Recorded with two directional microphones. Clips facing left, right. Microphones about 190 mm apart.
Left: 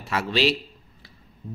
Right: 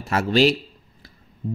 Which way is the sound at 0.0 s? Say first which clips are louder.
Right 5 dB; 45° right (ahead or behind).